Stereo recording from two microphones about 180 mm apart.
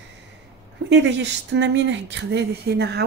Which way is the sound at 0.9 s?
75° right (ahead or behind).